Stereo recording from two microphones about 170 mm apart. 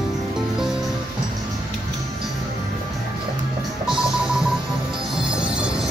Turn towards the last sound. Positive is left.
turn(degrees=-5)  # may be behind; listen again after turning